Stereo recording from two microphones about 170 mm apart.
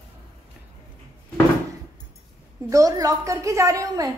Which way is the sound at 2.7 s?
20° right (ahead or behind).